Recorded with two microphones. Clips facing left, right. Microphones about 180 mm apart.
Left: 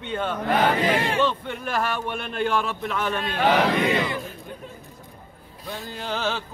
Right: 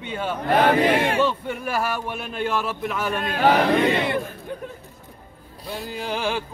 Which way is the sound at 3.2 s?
50° right (ahead or behind).